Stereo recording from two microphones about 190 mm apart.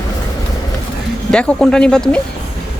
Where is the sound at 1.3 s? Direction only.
5° left (ahead or behind).